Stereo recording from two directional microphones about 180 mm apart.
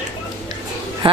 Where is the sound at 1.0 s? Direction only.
30° right (ahead or behind).